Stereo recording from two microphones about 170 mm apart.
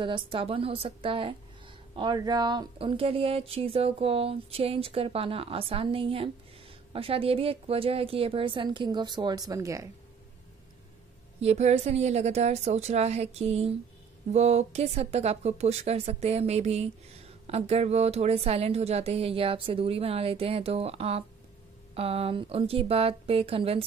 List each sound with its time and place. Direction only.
0.0 s speech: 30° right (ahead or behind)
11.4 s speech: 40° right (ahead or behind)